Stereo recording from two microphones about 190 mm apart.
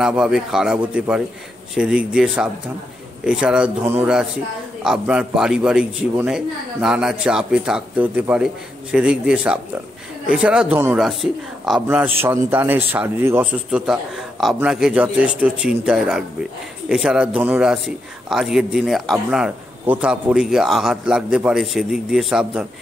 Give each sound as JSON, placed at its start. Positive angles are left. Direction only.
{"t": 0.0, "sound": "a man's voice", "side_deg": -5}